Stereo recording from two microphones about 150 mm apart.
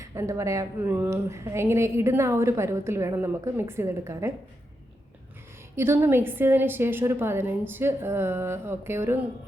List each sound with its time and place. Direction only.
0.0 s a woman's voice: 20° right (ahead or behind)
5.7 s a woman's voice: 15° right (ahead or behind)